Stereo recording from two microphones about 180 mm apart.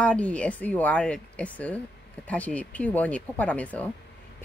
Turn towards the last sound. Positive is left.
turn(degrees=10)  # may be behind; listen again after turning